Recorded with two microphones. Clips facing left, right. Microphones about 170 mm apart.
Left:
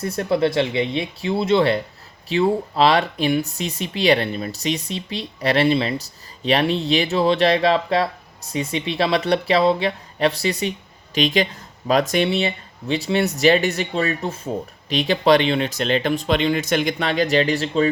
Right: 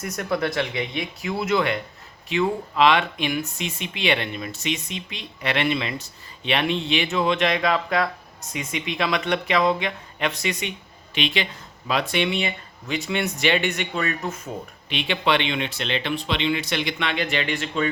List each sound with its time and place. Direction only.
0.0 s speech: 30° left (ahead or behind)